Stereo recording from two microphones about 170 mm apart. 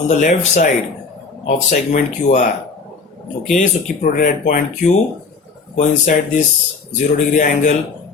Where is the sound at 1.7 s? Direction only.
45° left (ahead or behind).